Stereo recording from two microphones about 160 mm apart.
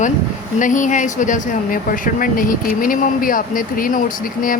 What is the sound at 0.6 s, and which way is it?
Speech, 55° left (ahead or behind).